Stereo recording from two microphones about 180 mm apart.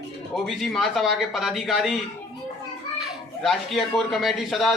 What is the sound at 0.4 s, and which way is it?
A man's voice, centre (ahead or behind).